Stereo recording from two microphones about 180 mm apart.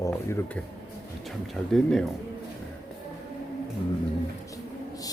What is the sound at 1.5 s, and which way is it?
Speech, centre (ahead or behind).